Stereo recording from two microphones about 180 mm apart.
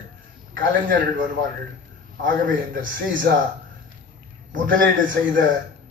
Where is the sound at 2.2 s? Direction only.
90° right.